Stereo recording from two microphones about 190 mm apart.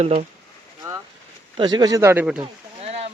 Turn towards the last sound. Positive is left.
turn(degrees=-35)  # may be behind; listen again after turning